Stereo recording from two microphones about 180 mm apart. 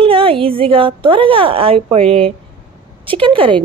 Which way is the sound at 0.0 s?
30° right (ahead or behind).